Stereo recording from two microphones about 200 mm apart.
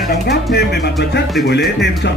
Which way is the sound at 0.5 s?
55° left (ahead or behind).